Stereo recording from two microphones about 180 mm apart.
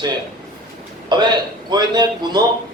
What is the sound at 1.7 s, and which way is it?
Speech, 25° right (ahead or behind).